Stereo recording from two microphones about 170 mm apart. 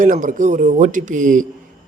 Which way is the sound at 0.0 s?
50° right (ahead or behind).